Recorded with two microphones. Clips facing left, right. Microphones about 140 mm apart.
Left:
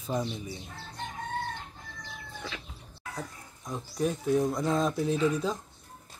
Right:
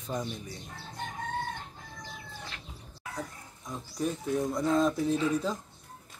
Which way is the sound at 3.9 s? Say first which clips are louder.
Left 4 dB; centre (ahead or behind).